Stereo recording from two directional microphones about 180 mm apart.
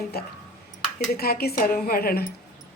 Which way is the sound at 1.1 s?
55° left (ahead or behind).